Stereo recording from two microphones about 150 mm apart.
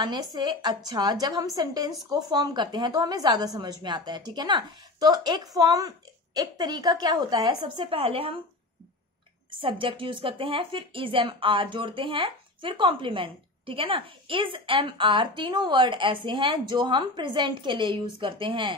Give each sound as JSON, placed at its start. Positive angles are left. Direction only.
{"t": 0.0, "sound": "a woman's voice", "side_deg": -25}
{"t": 9.6, "sound": "speech", "side_deg": -35}